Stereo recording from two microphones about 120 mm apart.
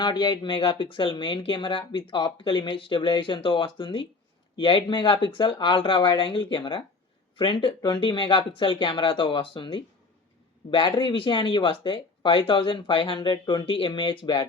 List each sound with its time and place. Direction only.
0.0 s speech: 35° left (ahead or behind)